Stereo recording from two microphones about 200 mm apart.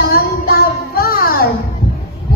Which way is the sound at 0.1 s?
50° left (ahead or behind).